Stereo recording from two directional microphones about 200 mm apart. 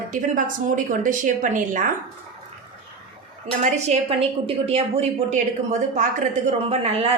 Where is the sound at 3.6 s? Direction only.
35° right (ahead or behind).